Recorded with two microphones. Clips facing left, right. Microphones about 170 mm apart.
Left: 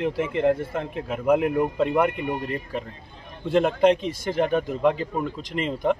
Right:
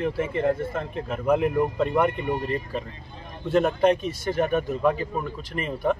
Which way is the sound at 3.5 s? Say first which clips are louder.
Left 1 dB; 15° left (ahead or behind).